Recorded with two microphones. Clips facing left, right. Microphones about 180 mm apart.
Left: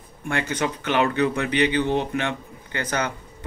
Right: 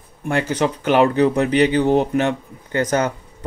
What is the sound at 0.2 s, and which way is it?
Speech, 35° right (ahead or behind).